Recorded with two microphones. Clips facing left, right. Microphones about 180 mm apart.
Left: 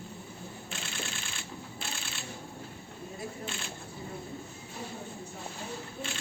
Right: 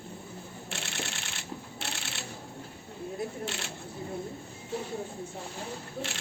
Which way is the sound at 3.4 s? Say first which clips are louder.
Right 3 dB; 75° right (ahead or behind).